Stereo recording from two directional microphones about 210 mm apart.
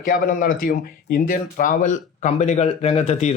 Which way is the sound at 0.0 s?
40° left (ahead or behind).